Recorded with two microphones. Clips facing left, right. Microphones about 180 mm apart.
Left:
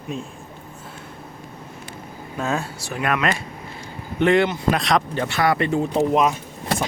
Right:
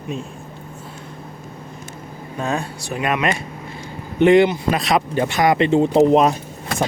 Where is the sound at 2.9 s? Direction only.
15° right (ahead or behind).